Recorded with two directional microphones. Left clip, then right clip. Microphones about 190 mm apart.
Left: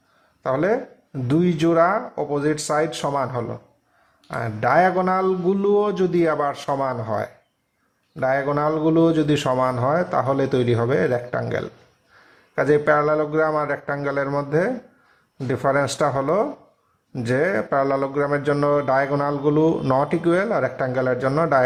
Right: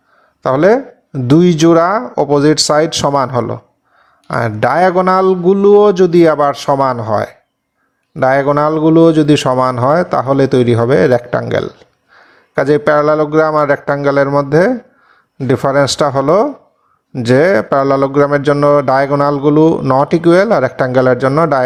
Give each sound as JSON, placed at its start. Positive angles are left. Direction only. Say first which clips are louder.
{"t": 0.4, "sound": "a man's voice", "louder": "right 11 dB", "side_deg": -35}